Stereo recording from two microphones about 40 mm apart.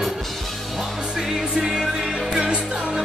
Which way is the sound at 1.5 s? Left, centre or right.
Centre.